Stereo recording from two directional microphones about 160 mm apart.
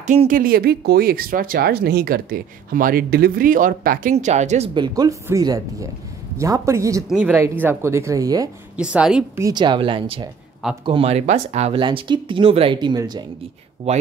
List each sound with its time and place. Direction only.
0.0 s speech: 50° right (ahead or behind)
4.7 s speech: 25° right (ahead or behind)
7.1 s speech: 10° right (ahead or behind)
8.7 s a woman's voice: 5° right (ahead or behind)
9.4 s speech: 25° right (ahead or behind); by 11.8 s 40° right (ahead or behind)
11.8 s speech: 30° right (ahead or behind)
13.9 s speech: 40° right (ahead or behind)